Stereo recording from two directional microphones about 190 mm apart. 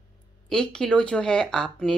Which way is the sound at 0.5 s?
5° left (ahead or behind).